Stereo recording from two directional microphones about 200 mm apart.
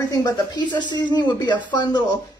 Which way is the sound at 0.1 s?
20° left (ahead or behind).